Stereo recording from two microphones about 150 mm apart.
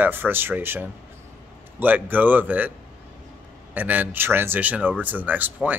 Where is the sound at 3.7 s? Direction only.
10° right (ahead or behind).